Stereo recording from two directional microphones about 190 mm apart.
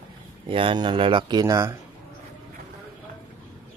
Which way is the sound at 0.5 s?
25° right (ahead or behind).